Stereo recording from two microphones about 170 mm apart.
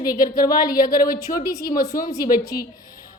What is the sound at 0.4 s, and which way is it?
Speech, 25° left (ahead or behind).